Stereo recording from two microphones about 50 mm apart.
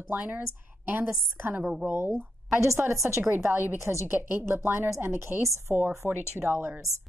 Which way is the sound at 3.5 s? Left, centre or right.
Right.